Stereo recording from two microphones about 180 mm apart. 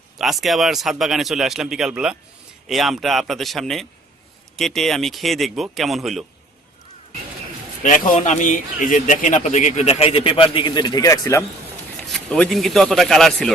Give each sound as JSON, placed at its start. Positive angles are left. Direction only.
{"t": 0.2, "sound": "speech", "side_deg": 0}
{"t": 7.8, "sound": "a man's voice", "side_deg": 45}
{"t": 12.1, "sound": "speech", "side_deg": 5}